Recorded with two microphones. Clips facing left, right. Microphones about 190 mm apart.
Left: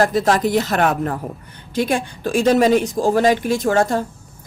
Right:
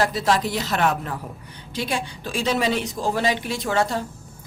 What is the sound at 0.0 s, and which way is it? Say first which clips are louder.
Speech: left 5 dB; 50° left (ahead or behind).